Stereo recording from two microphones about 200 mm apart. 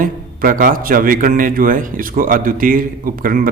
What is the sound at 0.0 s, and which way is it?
A man's voice, 45° right (ahead or behind).